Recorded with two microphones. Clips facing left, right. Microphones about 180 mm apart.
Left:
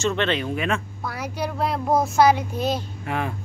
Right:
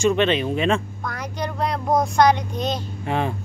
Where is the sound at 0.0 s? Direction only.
15° right (ahead or behind).